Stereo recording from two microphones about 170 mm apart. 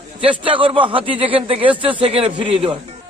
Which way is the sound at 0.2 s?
30° right (ahead or behind).